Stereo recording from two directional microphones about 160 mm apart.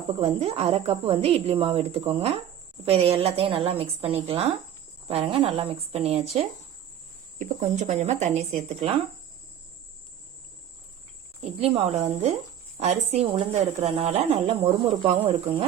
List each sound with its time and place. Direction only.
0.2 s speech: 40° right (ahead or behind)
7.3 s a woman's voice: 50° right (ahead or behind)
11.6 s a woman's voice: 40° right (ahead or behind)